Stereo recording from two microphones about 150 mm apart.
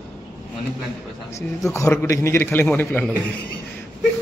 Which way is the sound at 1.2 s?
20° left (ahead or behind).